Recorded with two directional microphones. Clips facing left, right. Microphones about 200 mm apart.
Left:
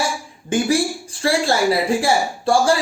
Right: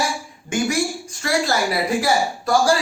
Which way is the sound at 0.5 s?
30° left (ahead or behind).